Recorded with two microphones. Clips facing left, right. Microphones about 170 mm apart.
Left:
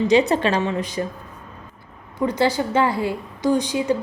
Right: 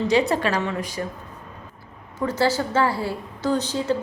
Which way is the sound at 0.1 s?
20° left (ahead or behind).